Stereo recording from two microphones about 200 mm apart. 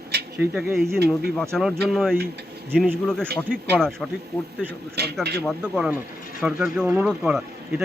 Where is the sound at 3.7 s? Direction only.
Centre (ahead or behind).